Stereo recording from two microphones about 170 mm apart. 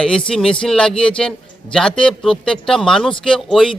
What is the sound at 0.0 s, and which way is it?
A man's voice, 5° left (ahead or behind).